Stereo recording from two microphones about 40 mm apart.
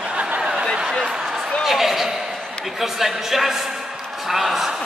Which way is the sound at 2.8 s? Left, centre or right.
Centre.